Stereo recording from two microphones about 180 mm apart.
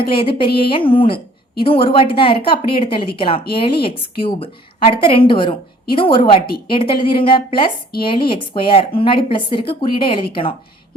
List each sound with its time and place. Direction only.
0.1 s a woman's voice: 30° left (ahead or behind)